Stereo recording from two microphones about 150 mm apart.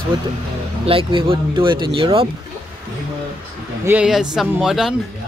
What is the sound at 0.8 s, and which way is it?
Speech, 35° right (ahead or behind).